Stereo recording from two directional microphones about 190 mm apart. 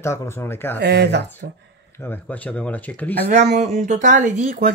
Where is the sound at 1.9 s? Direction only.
10° left (ahead or behind).